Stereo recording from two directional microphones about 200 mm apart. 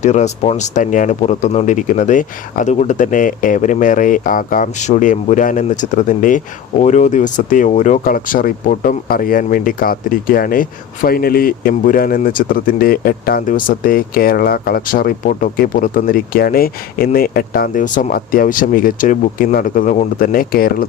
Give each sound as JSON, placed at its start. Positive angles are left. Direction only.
{"t": 0.0, "sound": "speech", "side_deg": 35}